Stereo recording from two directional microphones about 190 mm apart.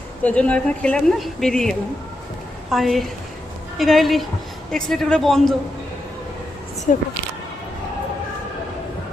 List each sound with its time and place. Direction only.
0.2 s speech: 5° left (ahead or behind)
6.9 s speech: 45° left (ahead or behind)